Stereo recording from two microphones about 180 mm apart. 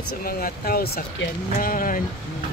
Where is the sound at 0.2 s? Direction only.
55° left (ahead or behind).